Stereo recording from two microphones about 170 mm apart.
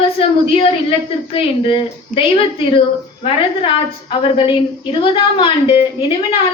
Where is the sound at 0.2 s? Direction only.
35° left (ahead or behind).